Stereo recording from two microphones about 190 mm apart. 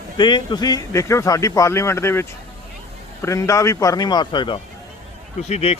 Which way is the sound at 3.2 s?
15° left (ahead or behind).